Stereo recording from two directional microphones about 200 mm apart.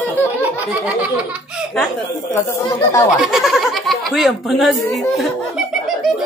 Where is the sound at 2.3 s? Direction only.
15° left (ahead or behind).